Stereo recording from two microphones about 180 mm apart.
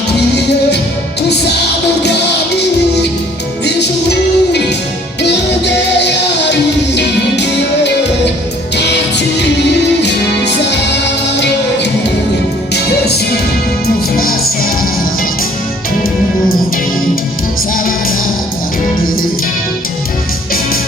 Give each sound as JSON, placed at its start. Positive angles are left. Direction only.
{"t": 3.7, "sound": "music", "side_deg": 70}